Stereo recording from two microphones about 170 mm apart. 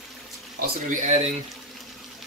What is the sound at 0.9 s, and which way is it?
Speech, 45° right (ahead or behind).